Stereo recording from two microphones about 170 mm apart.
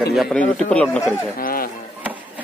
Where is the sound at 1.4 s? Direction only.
60° left (ahead or behind).